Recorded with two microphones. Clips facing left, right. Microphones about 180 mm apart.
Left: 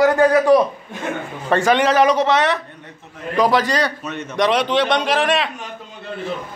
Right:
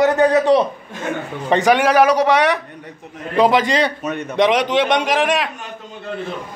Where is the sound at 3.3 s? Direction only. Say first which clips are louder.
Right 2 dB; 20° right (ahead or behind).